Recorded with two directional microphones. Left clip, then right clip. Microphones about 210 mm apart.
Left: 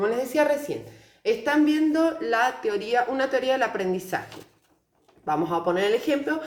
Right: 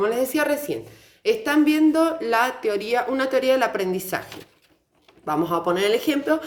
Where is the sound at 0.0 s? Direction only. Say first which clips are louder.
Right 1 dB; 50° right (ahead or behind).